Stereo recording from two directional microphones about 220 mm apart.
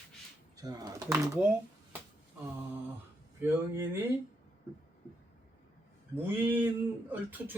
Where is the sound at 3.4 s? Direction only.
10° right (ahead or behind).